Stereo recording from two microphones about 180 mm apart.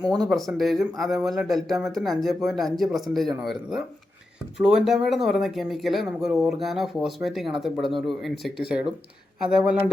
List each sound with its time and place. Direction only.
0.0 s speech: 20° right (ahead or behind)
0.3 s speech: centre (ahead or behind)